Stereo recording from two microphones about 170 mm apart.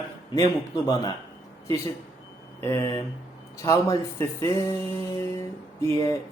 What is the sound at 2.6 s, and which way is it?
Speech, 15° left (ahead or behind).